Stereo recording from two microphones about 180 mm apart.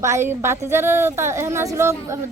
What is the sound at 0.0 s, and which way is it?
A woman's voice, 15° right (ahead or behind).